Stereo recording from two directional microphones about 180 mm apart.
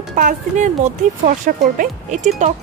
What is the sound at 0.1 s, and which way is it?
Speech, 45° right (ahead or behind).